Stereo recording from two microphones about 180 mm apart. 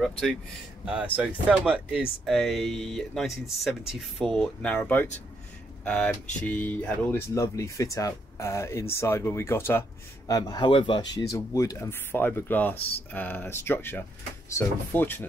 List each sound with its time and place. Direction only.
0.0 s speech: centre (ahead or behind)
0.8 s speech: 10° right (ahead or behind); by 15.2 s 10° left (ahead or behind)